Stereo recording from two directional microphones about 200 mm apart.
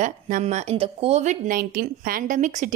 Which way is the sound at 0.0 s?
35° right (ahead or behind).